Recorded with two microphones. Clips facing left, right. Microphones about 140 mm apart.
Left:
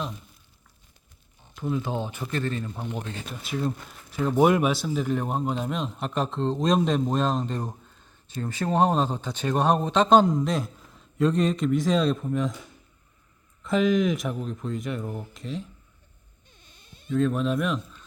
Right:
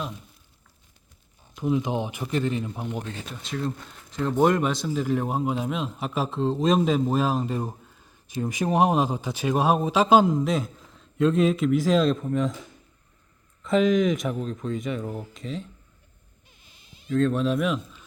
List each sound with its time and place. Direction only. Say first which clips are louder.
1.5 s speech: right 3 dB; 15° right (ahead or behind)
3.4 s speech: left 1 dB; 10° left (ahead or behind)
17.1 s speech: right 1 dB; 5° left (ahead or behind)